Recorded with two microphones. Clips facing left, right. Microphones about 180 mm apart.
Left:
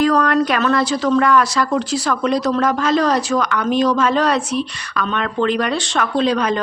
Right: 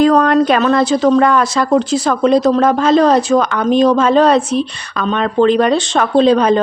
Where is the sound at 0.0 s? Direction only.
25° right (ahead or behind).